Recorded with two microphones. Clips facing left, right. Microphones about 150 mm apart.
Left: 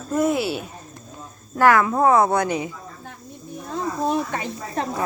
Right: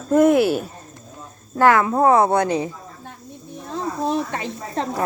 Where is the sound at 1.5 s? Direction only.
25° right (ahead or behind).